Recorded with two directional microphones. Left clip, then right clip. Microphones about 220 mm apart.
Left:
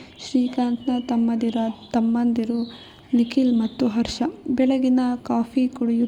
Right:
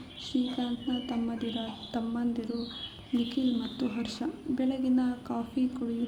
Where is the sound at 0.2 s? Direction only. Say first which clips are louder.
Left 9 dB; 30° left (ahead or behind).